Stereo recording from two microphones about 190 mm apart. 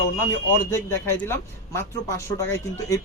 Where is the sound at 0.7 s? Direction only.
15° left (ahead or behind).